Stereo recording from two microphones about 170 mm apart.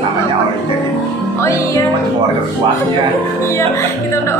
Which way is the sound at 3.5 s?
15° left (ahead or behind).